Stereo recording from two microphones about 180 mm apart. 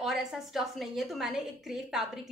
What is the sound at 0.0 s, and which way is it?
A woman's voice, centre (ahead or behind).